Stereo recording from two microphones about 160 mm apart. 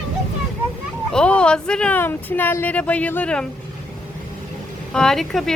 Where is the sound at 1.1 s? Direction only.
5° left (ahead or behind).